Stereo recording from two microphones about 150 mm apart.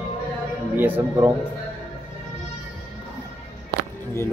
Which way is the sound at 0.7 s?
15° right (ahead or behind).